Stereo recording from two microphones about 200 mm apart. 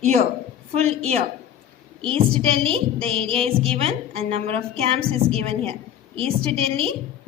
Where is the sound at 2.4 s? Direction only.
25° right (ahead or behind).